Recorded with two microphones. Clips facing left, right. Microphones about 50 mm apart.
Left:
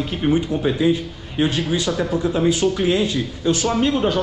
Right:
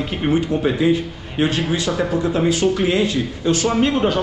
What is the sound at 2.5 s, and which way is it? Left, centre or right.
Speech, right.